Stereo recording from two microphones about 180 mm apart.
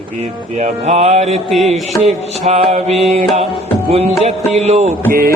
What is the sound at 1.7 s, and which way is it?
Music, 35° right (ahead or behind).